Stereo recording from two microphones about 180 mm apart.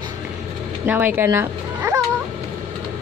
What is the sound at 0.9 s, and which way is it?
Speech, 10° right (ahead or behind).